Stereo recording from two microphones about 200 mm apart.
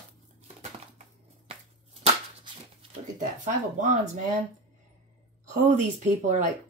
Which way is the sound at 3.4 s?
35° right (ahead or behind).